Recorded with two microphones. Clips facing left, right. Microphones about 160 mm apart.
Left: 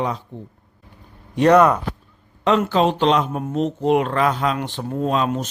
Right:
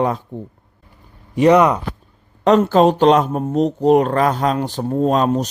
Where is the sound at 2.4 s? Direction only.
40° right (ahead or behind).